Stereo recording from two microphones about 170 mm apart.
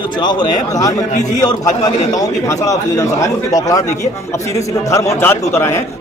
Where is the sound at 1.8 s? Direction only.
20° left (ahead or behind).